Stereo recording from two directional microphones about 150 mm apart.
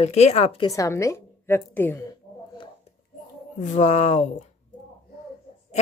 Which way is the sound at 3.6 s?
55° left (ahead or behind).